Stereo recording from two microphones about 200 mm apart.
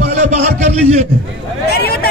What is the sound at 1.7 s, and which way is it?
Vehicle, 50° left (ahead or behind).